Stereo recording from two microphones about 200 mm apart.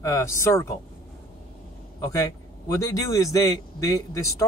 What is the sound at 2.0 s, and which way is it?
A man's voice, 15° left (ahead or behind).